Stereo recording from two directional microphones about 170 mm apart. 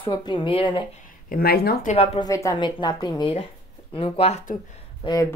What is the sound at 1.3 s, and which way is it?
Speech, 65° left (ahead or behind).